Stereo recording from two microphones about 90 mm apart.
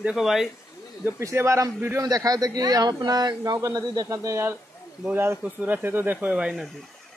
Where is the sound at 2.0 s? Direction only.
45° right (ahead or behind).